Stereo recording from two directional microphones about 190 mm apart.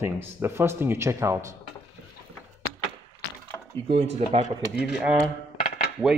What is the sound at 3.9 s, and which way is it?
Speech, 35° right (ahead or behind).